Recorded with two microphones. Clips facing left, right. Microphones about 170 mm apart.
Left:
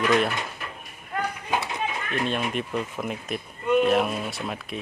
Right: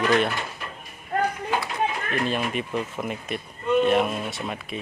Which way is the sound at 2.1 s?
Centre (ahead or behind).